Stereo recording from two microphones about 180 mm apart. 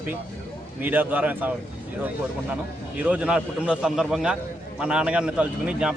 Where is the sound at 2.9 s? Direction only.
10° right (ahead or behind).